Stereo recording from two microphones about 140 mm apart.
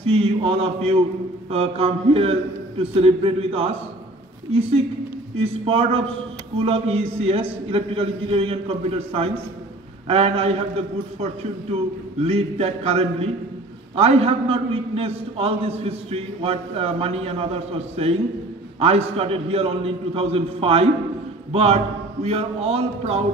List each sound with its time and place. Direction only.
0.0 s a man's voice: 45° right (ahead or behind)
12.2 s a man's voice: 45° right (ahead or behind)